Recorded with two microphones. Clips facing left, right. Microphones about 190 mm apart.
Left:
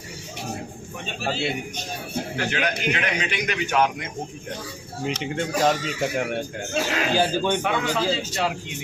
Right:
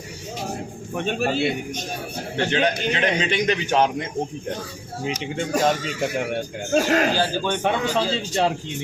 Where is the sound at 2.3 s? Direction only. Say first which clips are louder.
Right 6 dB; 30° right (ahead or behind).